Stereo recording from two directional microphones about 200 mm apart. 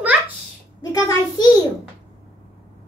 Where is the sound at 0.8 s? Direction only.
20° left (ahead or behind).